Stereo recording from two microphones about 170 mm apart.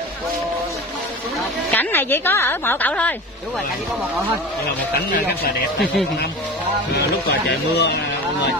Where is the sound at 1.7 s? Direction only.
10° left (ahead or behind).